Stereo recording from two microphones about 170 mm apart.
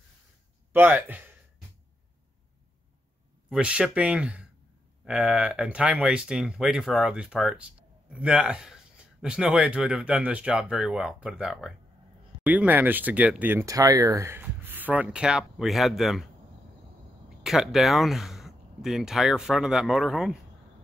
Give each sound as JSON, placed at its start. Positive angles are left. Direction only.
{"t": 0.7, "sound": "speech", "side_deg": -10}
{"t": 3.4, "sound": "speech", "side_deg": -5}
{"t": 17.4, "sound": "speech", "side_deg": 0}